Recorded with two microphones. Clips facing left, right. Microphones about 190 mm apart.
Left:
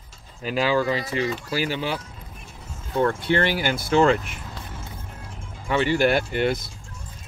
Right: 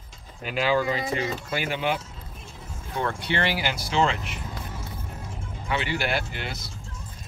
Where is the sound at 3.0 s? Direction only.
50° left (ahead or behind).